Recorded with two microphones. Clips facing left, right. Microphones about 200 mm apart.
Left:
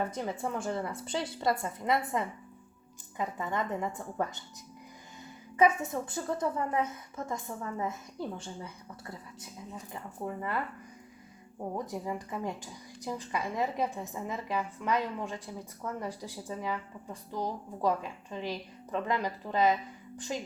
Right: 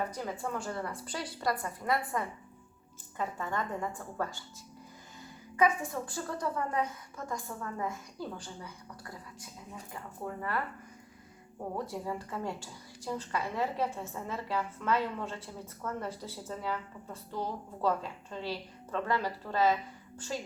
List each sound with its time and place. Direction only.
0.1 s a woman's voice: 20° left (ahead or behind)
5.5 s a woman's voice: 20° left (ahead or behind)
11.9 s speech: 15° left (ahead or behind)